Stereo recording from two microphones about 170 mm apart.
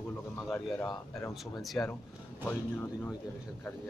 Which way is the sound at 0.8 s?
25° left (ahead or behind).